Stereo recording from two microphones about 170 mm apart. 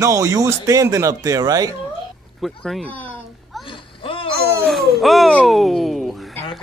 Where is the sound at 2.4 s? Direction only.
Centre (ahead or behind).